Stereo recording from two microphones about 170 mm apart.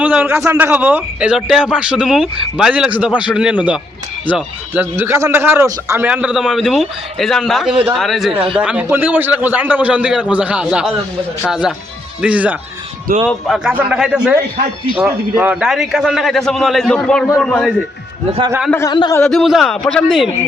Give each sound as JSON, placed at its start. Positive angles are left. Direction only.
{"t": 0.0, "sound": "a man's voice", "side_deg": -10}
{"t": 18.9, "sound": "speech", "side_deg": 25}
{"t": 19.1, "sound": "a man's voice", "side_deg": 5}